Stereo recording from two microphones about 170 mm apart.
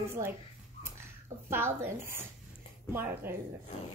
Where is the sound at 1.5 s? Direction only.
15° right (ahead or behind).